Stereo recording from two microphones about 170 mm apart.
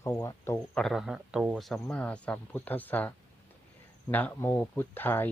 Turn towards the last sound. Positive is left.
turn(degrees=10)  # may be behind; listen again after turning